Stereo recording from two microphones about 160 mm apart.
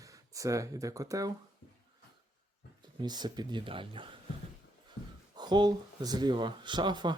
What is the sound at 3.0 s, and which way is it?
Speech, 25° right (ahead or behind).